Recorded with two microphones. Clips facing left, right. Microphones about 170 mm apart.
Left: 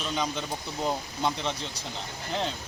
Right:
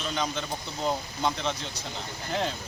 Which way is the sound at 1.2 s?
5° left (ahead or behind).